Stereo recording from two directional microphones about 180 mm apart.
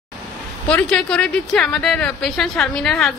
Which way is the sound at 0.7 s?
5° left (ahead or behind).